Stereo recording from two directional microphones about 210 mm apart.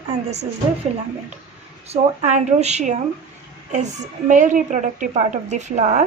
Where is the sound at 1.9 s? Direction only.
30° right (ahead or behind).